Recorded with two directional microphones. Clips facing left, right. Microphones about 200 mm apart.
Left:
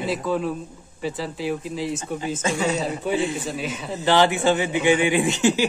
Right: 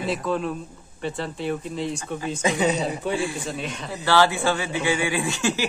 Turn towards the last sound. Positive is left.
turn(degrees=20)  # may be behind; listen again after turning